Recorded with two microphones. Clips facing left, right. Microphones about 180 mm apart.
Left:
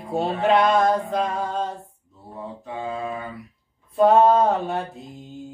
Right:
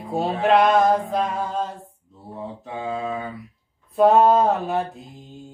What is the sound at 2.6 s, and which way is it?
Mantra, 20° right (ahead or behind).